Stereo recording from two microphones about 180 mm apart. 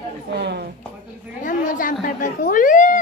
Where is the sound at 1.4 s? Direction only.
45° left (ahead or behind).